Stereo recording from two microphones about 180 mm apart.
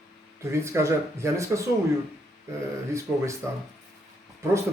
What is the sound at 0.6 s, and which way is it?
A man's voice, 15° right (ahead or behind).